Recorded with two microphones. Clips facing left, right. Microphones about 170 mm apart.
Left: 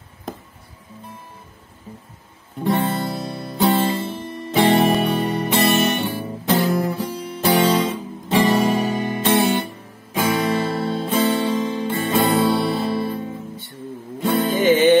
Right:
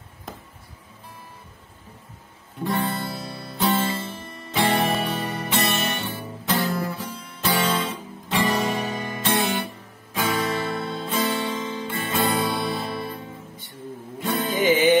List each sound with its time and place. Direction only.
2.6 s music: 20° left (ahead or behind)
10.1 s guitar: 20° left (ahead or behind)
10.7 s music: 35° left (ahead or behind)
11.0 s music: 25° left (ahead or behind)
14.6 s music: 10° right (ahead or behind)